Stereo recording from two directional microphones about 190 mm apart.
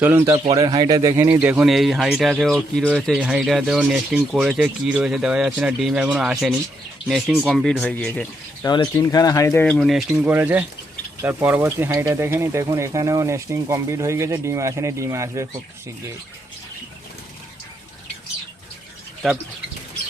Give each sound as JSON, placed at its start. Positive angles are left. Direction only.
{"t": 0.0, "sound": "speech", "side_deg": -10}
{"t": 0.3, "sound": "speech", "side_deg": -25}
{"t": 8.6, "sound": "speech", "side_deg": 20}
{"t": 9.6, "sound": "speech", "side_deg": 0}